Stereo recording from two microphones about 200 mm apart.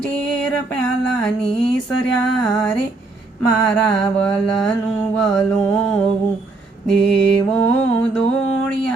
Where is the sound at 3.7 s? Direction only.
5° left (ahead or behind).